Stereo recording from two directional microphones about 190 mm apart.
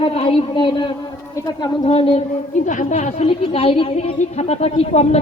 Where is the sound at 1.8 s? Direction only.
30° left (ahead or behind).